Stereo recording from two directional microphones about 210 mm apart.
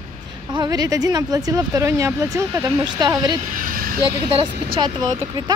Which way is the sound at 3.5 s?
40° right (ahead or behind).